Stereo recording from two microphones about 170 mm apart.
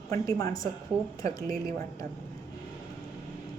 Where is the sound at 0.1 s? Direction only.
20° left (ahead or behind).